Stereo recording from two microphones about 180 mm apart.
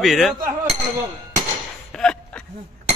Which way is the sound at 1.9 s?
5° left (ahead or behind).